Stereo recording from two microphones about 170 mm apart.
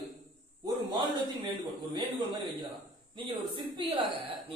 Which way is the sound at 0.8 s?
25° right (ahead or behind).